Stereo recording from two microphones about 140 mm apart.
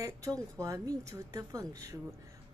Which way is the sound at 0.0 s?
25° right (ahead or behind).